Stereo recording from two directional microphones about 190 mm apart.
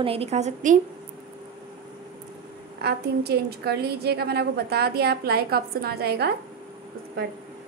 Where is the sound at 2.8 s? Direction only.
60° right (ahead or behind).